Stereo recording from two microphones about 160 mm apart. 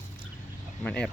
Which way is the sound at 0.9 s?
5° left (ahead or behind).